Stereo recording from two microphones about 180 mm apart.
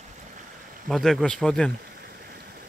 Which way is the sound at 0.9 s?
Centre (ahead or behind).